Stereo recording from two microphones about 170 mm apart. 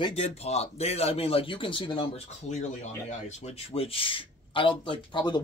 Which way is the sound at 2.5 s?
45° left (ahead or behind).